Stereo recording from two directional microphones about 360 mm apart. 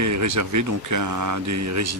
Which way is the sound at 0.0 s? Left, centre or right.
Right.